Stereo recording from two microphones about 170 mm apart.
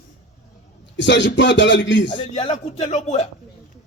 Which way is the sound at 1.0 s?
90° left.